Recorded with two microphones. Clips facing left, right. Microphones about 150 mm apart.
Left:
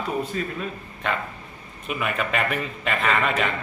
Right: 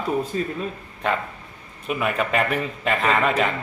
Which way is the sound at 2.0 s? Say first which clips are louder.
Right 3 dB; 35° right (ahead or behind).